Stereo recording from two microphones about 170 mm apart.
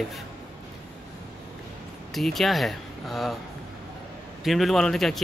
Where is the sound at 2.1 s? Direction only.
Centre (ahead or behind).